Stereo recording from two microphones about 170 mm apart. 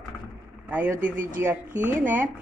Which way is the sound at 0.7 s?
10° right (ahead or behind).